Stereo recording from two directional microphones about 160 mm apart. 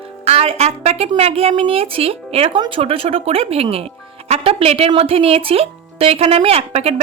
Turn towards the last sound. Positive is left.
turn(degrees=-40)  # may be behind; listen again after turning